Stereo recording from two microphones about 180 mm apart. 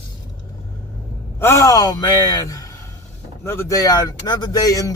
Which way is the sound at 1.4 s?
15° left (ahead or behind).